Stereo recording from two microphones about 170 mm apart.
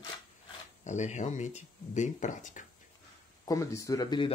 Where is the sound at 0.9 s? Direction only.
45° left (ahead or behind).